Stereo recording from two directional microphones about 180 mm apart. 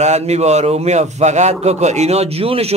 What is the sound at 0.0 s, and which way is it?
A man's voice, 40° right (ahead or behind).